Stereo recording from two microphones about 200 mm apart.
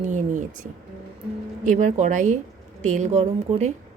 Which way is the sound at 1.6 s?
40° right (ahead or behind).